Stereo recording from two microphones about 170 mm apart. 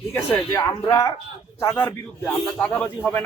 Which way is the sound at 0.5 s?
20° left (ahead or behind).